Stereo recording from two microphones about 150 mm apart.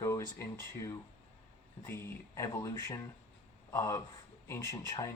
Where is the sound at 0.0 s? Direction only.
20° left (ahead or behind).